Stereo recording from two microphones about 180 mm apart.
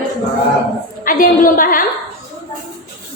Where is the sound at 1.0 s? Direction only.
50° left (ahead or behind).